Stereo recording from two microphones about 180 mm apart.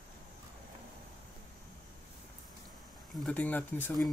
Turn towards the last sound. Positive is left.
turn(degrees=10)  # may be behind; listen again after turning